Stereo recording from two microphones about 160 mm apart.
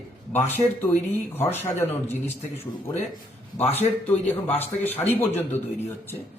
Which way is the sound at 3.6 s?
40° left (ahead or behind).